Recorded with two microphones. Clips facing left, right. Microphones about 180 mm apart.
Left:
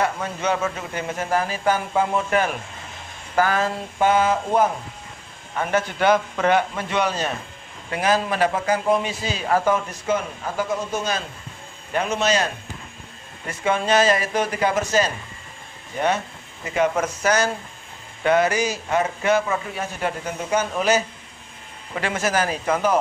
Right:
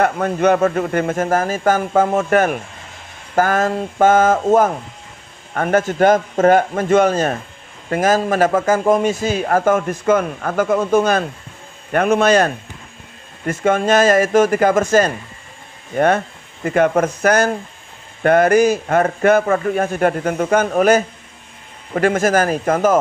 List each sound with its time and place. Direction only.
0.0 s a man's voice: 55° right (ahead or behind)